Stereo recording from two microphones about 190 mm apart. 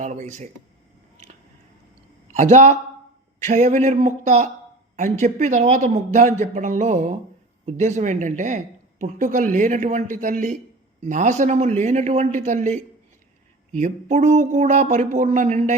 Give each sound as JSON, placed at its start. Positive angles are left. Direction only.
{"t": 0.0, "sound": "speech", "side_deg": -40}
{"t": 2.3, "sound": "a woman's voice", "side_deg": -35}